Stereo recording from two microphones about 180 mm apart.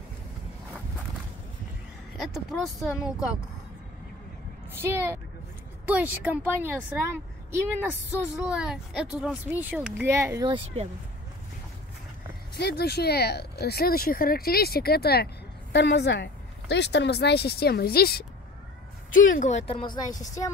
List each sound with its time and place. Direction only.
2.3 s speech: centre (ahead or behind)
4.8 s speech: 15° right (ahead or behind)
8.2 s speech: 5° right (ahead or behind); by 10.9 s 30° right (ahead or behind)
12.5 s speech: 65° left (ahead or behind)
15.7 s speech: 75° left (ahead or behind); by 18.2 s 60° left (ahead or behind)
19.1 s speech: 45° left (ahead or behind); by 20.2 s 25° left (ahead or behind)